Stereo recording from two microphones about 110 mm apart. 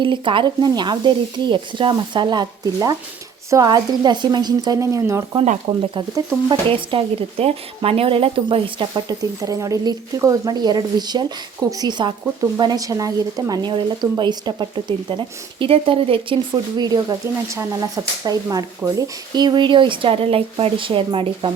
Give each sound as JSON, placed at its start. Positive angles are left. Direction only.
{"t": 0.0, "sound": "a woman's voice", "side_deg": -50}
{"t": 5.4, "sound": "a woman's voice", "side_deg": -50}